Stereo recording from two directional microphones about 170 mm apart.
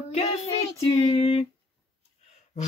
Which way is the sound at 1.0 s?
35° left (ahead or behind).